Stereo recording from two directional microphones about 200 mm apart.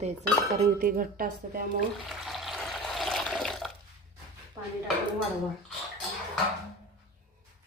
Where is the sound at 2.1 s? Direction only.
Centre (ahead or behind).